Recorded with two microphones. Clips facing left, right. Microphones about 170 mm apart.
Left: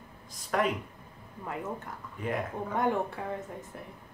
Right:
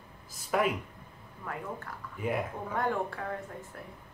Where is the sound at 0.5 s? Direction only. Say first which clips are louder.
Even; 5° right (ahead or behind).